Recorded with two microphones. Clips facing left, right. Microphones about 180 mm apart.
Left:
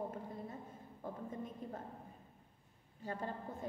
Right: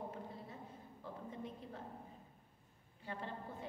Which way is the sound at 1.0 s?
45° left (ahead or behind).